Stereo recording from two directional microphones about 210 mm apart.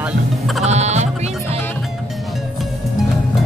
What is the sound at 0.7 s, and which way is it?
Music, 30° right (ahead or behind).